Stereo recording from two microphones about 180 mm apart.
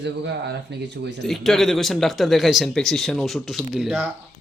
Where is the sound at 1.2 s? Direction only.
Centre (ahead or behind).